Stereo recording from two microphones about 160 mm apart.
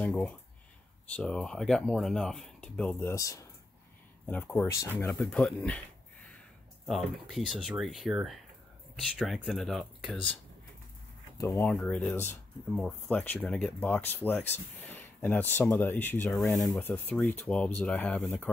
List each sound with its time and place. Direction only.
1.0 s speech: 5° left (ahead or behind)
6.9 s speech: centre (ahead or behind)
11.3 s speech: 15° left (ahead or behind)
11.7 s speech: 5° left (ahead or behind)
16.3 s speech: centre (ahead or behind)
16.7 s speech: 15° left (ahead or behind)